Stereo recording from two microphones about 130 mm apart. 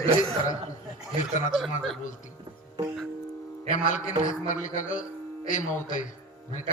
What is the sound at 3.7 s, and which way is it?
A man's voice, 75° left (ahead or behind).